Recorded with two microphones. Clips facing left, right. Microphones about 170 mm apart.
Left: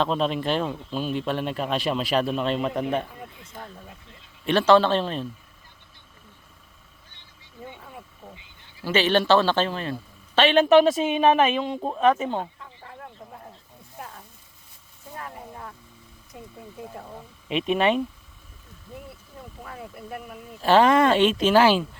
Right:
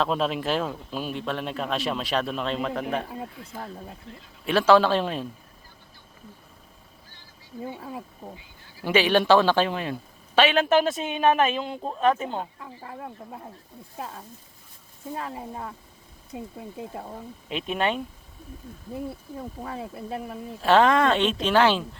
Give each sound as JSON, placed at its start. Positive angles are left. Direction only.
{"t": 0.0, "sound": "a man's voice", "side_deg": -5}
{"t": 3.1, "sound": "speech", "side_deg": -25}
{"t": 4.4, "sound": "a man's voice", "side_deg": -5}
{"t": 7.6, "sound": "speech", "side_deg": -35}
{"t": 8.8, "sound": "a man's voice", "side_deg": -10}
{"t": 15.1, "sound": "speech", "side_deg": -25}
{"t": 17.7, "sound": "a man's voice", "side_deg": 5}
{"t": 18.9, "sound": "speech", "side_deg": -30}
{"t": 20.6, "sound": "a man's voice", "side_deg": 0}